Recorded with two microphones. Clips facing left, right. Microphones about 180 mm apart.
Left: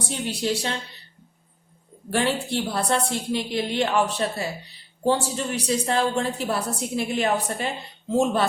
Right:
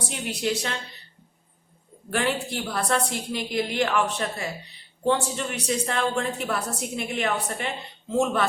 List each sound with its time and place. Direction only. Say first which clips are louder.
0.1 s a woman's voice: left 2 dB; 30° left (ahead or behind)
2.0 s a woman's voice: left 2 dB; 30° left (ahead or behind)